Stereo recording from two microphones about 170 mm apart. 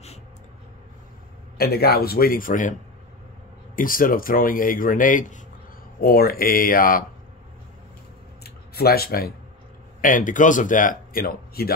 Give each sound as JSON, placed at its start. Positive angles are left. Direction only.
{"t": 1.6, "sound": "speech", "side_deg": 65}
{"t": 3.7, "sound": "speech", "side_deg": 55}
{"t": 5.9, "sound": "speech", "side_deg": 60}
{"t": 8.5, "sound": "a sound", "side_deg": 65}
{"t": 10.0, "sound": "speech", "side_deg": 50}